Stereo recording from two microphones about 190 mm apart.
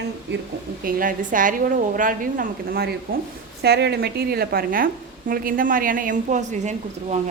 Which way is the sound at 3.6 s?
60° right (ahead or behind).